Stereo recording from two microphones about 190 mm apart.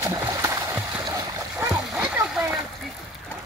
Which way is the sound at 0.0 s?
20° right (ahead or behind).